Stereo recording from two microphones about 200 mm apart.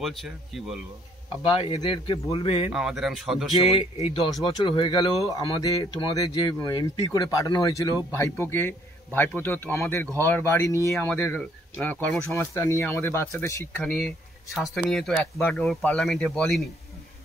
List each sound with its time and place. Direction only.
0.0 s speech: centre (ahead or behind)
1.5 s speech: 25° left (ahead or behind)
2.7 s speech: centre (ahead or behind)
3.6 s speech: 30° left (ahead or behind); by 13.8 s 10° left (ahead or behind)
13.8 s speech: centre (ahead or behind)